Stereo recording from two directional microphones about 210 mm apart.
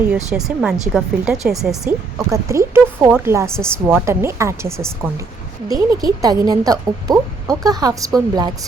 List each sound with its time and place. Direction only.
0.3 s speech: 5° right (ahead or behind)
2.3 s speech: 15° right (ahead or behind)